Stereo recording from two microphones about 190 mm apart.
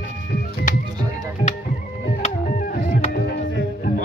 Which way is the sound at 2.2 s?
40° left (ahead or behind).